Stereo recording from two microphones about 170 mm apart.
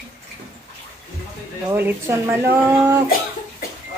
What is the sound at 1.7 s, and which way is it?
Speech, 15° right (ahead or behind).